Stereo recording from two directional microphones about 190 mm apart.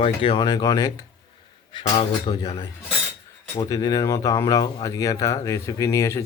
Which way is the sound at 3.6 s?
20° left (ahead or behind).